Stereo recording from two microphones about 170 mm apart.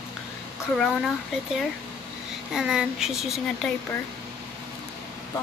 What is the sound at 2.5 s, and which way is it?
Speech, 5° right (ahead or behind).